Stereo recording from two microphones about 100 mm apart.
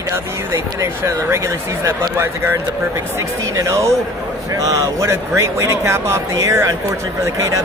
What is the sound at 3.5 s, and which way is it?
Speech, 35° right (ahead or behind).